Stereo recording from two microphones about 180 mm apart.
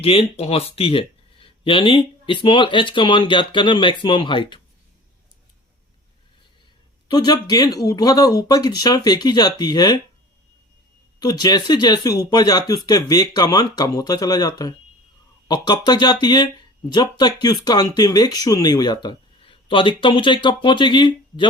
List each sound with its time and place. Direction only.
0.0 s speech: 30° left (ahead or behind)
7.1 s speech: 20° left (ahead or behind)
11.2 s speech: 20° left (ahead or behind)